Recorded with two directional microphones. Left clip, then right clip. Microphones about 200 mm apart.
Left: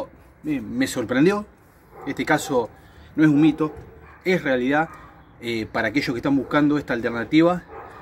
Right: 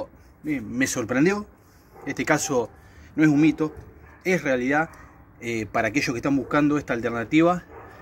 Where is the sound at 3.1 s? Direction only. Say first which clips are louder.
Left 2 dB; 35° right (ahead or behind).